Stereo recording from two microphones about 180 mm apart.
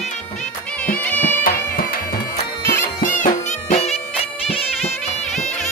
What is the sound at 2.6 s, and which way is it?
Music, 15° left (ahead or behind).